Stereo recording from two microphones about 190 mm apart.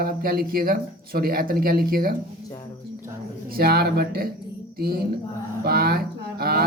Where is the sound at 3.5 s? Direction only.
55° right (ahead or behind).